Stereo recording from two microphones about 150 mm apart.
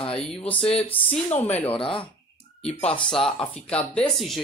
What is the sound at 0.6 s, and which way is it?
Speech, 40° left (ahead or behind).